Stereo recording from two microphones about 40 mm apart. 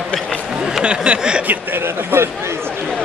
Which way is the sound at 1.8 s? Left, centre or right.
Right.